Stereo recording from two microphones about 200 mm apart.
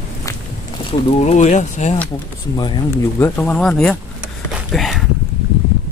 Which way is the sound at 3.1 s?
10° left (ahead or behind).